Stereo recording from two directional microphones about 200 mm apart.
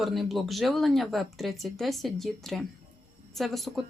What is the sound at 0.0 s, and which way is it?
Speech, centre (ahead or behind).